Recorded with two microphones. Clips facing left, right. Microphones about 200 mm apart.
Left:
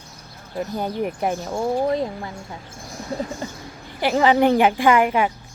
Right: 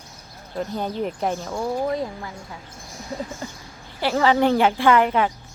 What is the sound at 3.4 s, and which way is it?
Speech, 20° left (ahead or behind).